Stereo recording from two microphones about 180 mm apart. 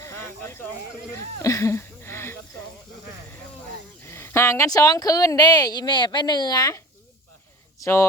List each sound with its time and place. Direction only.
0.0 s snake: 15° left (ahead or behind)
1.1 s a sound: 15° left (ahead or behind)
4.0 s speech: 15° left (ahead or behind)